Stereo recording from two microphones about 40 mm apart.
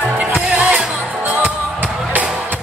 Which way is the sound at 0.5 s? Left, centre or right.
Right.